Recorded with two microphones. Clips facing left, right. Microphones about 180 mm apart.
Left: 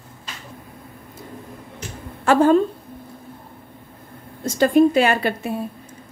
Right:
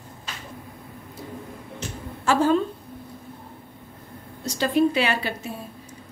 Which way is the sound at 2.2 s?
55° left (ahead or behind).